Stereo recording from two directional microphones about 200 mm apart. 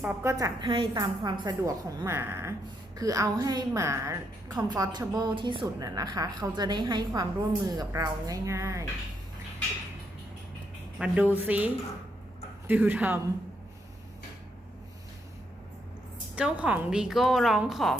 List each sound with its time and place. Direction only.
0.0 s a woman's voice: 10° right (ahead or behind)
10.9 s speech: 5° right (ahead or behind)
16.3 s a woman's voice: 5° right (ahead or behind)